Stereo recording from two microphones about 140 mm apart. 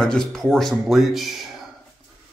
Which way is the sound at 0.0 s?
5° left (ahead or behind).